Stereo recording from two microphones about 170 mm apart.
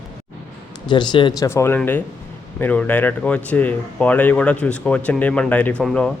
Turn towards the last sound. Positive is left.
turn(degrees=5)  # may be behind; listen again after turning